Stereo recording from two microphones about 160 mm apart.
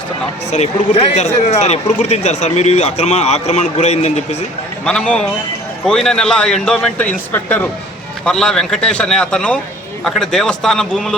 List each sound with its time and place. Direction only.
0.5 s a man's voice: 40° left (ahead or behind)
4.9 s a man's voice: 5° left (ahead or behind)